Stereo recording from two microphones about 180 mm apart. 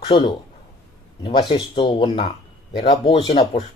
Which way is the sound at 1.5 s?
25° left (ahead or behind).